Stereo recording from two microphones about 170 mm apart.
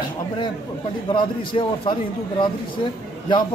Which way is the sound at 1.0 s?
30° left (ahead or behind).